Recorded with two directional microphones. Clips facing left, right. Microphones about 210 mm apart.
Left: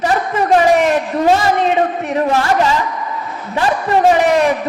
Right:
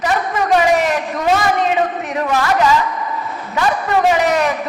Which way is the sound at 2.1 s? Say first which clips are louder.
Left 2 dB; 30° left (ahead or behind).